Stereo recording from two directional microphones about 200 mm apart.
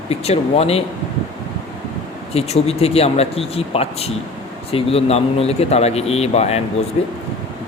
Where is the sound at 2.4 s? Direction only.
30° left (ahead or behind).